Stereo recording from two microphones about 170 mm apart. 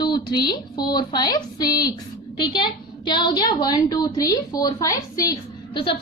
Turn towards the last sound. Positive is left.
turn(degrees=25)  # may be behind; listen again after turning